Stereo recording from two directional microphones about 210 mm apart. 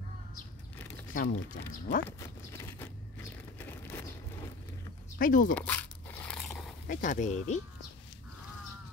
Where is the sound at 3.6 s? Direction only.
10° left (ahead or behind).